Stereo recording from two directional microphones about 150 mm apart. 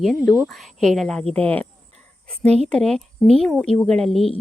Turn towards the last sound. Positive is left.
turn(degrees=0)  # may be behind; listen again after turning